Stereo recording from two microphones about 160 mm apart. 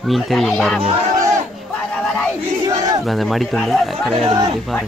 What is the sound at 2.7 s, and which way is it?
Battle cry, 20° right (ahead or behind).